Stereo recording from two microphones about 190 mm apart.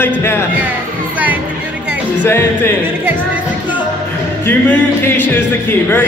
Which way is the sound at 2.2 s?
10° left (ahead or behind).